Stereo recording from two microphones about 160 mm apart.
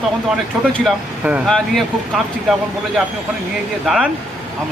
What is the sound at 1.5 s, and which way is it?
Speech, centre (ahead or behind).